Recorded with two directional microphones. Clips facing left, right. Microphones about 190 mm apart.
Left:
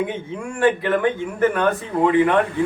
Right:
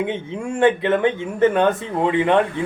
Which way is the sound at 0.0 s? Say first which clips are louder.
Right 1 dB; 25° right (ahead or behind).